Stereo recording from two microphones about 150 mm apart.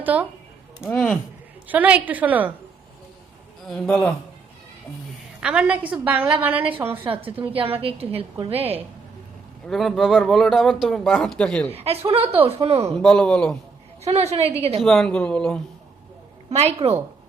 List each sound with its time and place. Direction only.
0.0 s speech: 10° right (ahead or behind)
0.8 s a man's voice: 10° left (ahead or behind)
1.6 s a woman's voice: 10° right (ahead or behind)
3.7 s a man's voice: 10° left (ahead or behind)
5.4 s a woman's voice: 5° right (ahead or behind)
7.0 s a woman's voice: 35° right (ahead or behind)
9.6 s speech: centre (ahead or behind)
11.7 s a woman's voice: 40° right (ahead or behind)
12.9 s speech: 5° left (ahead or behind)
14.0 s a woman's voice: 45° right (ahead or behind)
14.8 s speech: centre (ahead or behind)
16.5 s a woman's voice: 45° right (ahead or behind)